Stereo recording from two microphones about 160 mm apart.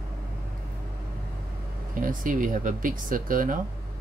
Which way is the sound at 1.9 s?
60° right (ahead or behind).